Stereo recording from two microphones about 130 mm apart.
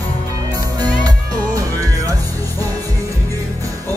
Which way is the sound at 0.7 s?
30° right (ahead or behind).